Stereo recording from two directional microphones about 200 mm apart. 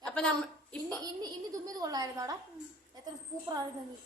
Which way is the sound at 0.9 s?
20° right (ahead or behind).